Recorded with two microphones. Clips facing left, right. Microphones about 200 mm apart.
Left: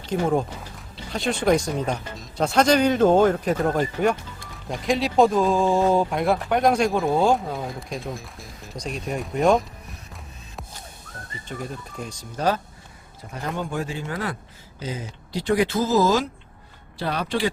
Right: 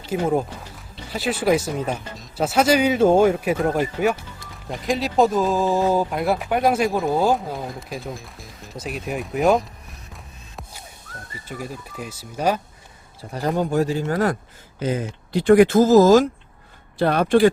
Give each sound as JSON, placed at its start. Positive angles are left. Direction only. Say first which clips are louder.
{"t": 0.1, "sound": "speech", "louder": "right 1 dB", "side_deg": -5}
{"t": 11.4, "sound": "speech", "louder": "right 1 dB", "side_deg": -5}
{"t": 13.3, "sound": "speech", "louder": "right 7 dB", "side_deg": -35}
{"t": 14.8, "sound": "speech", "louder": "right 8 dB", "side_deg": -55}